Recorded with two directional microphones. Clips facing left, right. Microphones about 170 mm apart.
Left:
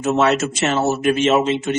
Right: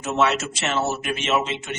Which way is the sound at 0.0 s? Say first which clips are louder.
Left 5 dB; 45° left (ahead or behind).